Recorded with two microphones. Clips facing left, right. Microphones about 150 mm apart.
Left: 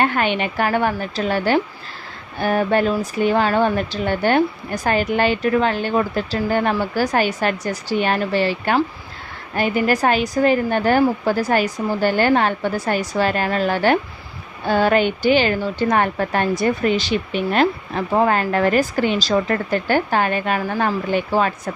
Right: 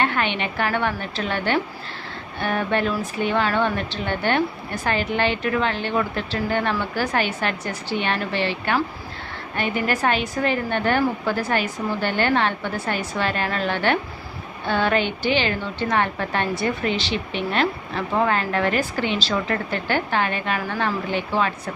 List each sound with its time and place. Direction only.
0.0 s a woman's voice: 40° left (ahead or behind)